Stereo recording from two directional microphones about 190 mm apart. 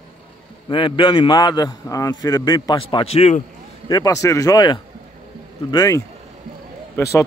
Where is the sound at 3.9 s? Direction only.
20° left (ahead or behind).